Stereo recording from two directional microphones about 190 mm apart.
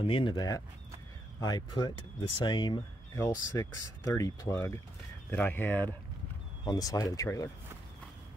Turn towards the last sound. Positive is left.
turn(degrees=15)  # may be behind; listen again after turning